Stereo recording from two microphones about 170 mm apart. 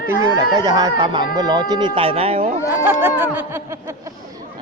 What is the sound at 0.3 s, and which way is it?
Speech, 20° right (ahead or behind).